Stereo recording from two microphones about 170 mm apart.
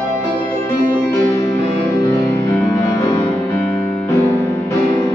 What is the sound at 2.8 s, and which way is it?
Music, 20° left (ahead or behind).